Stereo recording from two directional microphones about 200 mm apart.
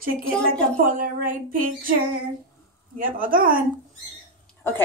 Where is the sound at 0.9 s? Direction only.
45° right (ahead or behind).